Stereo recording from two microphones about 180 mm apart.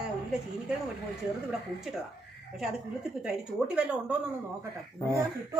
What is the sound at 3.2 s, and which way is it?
Speech, 5° right (ahead or behind).